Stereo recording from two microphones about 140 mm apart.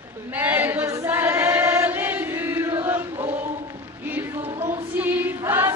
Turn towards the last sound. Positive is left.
turn(degrees=-15)  # may be behind; listen again after turning